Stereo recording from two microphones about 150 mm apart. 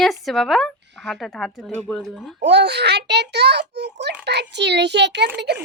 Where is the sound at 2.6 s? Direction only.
90° right.